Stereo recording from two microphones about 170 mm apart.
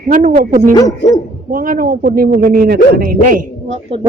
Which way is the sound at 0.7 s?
20° left (ahead or behind).